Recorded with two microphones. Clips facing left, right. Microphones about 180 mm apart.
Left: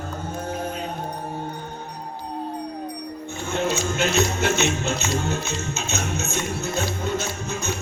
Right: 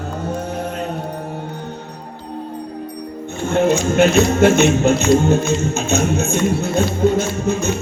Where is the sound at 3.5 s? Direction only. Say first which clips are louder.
Right 9 dB; 55° right (ahead or behind).